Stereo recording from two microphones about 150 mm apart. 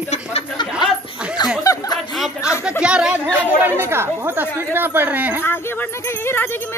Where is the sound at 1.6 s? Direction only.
20° left (ahead or behind).